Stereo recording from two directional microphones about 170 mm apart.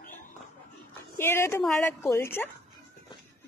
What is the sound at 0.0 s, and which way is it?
Dog, 50° left (ahead or behind).